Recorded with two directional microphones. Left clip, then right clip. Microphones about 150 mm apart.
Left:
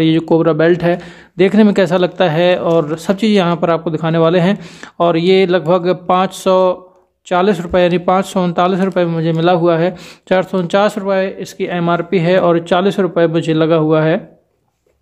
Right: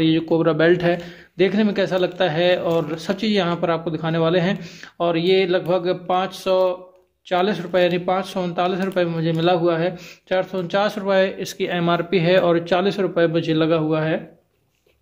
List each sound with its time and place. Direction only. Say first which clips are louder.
0.0 s speech: left 6 dB; 50° left (ahead or behind); by 0.9 s 35° left (ahead or behind)
0.9 s a man's voice: left 6 dB; 50° left (ahead or behind)
7.2 s speech: left 7 dB; 50° left (ahead or behind)
11.0 s a man's voice: left 3 dB; 25° left (ahead or behind); by 14.2 s 55° left (ahead or behind)